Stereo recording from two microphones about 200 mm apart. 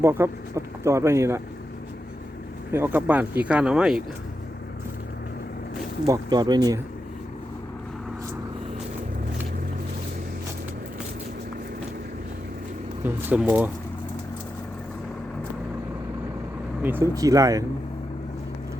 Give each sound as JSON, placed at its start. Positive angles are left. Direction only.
{"t": 0.0, "sound": "speech", "side_deg": -10}
{"t": 2.7, "sound": "speech", "side_deg": -10}
{"t": 6.1, "sound": "speech", "side_deg": -20}
{"t": 13.4, "sound": "speech", "side_deg": -10}
{"t": 16.8, "sound": "speech", "side_deg": -10}